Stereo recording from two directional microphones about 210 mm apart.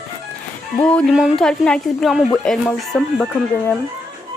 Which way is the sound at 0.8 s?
5° left (ahead or behind).